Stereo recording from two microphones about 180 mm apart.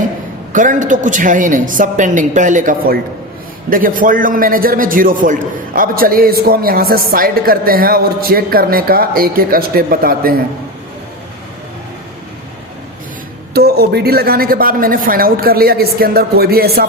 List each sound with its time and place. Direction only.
0.5 s a man's voice: 45° right (ahead or behind)
13.5 s a woman's voice: 60° right (ahead or behind)